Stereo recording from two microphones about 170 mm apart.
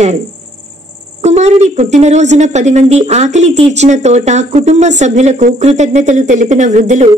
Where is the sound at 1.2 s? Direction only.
40° right (ahead or behind).